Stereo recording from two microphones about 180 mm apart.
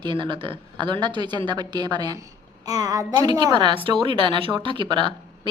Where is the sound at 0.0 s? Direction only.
25° right (ahead or behind).